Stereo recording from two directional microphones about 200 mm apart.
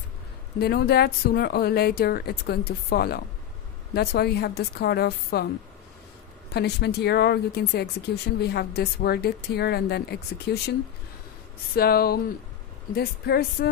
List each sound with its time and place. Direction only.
0.6 s speech: 55° left (ahead or behind)
6.5 s a woman's voice: 55° left (ahead or behind)
11.7 s speech: 50° left (ahead or behind)